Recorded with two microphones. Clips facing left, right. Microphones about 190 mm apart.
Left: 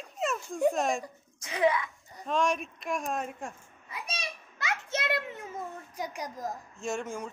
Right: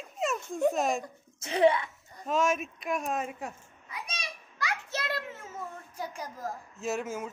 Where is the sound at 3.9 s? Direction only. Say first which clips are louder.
Left 2 dB; 25° left (ahead or behind).